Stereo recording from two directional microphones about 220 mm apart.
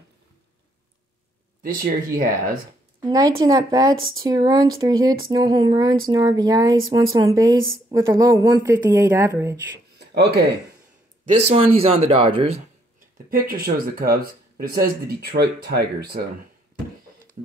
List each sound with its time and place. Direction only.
1.6 s speech: 40° right (ahead or behind)
3.1 s speech: 15° right (ahead or behind)
9.9 s a sound: 50° right (ahead or behind)
11.2 s a man's voice: 30° right (ahead or behind)
13.3 s speech: 40° right (ahead or behind)